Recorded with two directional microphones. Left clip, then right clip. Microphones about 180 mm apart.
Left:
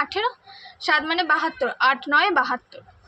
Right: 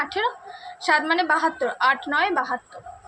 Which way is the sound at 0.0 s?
15° left (ahead or behind).